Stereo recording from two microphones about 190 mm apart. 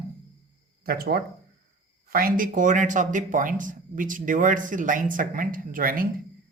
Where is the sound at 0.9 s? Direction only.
50° right (ahead or behind).